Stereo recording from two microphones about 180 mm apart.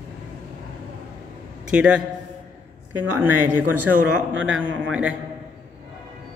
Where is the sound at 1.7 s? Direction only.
5° right (ahead or behind).